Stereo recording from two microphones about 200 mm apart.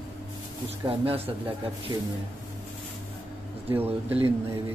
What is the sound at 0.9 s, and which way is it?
Speech, 30° right (ahead or behind).